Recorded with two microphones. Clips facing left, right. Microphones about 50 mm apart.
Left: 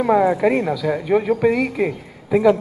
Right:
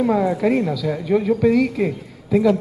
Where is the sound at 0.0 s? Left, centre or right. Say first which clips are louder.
Left 2 dB; left.